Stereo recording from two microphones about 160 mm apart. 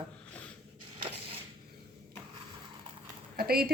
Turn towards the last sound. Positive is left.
turn(degrees=-70)  # may be behind; listen again after turning